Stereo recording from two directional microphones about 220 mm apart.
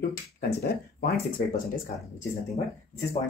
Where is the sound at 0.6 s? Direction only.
45° left (ahead or behind).